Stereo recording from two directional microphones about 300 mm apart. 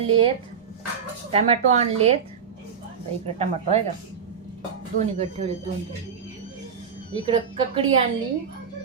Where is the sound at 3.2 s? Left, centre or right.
Right.